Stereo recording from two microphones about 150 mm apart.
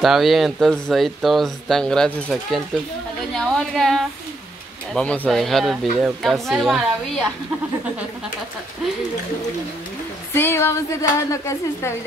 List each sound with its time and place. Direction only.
0.0 s speech: centre (ahead or behind)
10.3 s a woman's voice: 15° left (ahead or behind)